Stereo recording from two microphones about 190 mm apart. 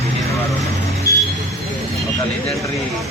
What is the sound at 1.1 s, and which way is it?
Vehicle, 15° left (ahead or behind).